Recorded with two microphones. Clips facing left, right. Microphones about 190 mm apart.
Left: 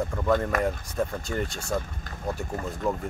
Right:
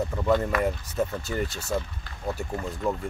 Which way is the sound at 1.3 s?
45° left (ahead or behind).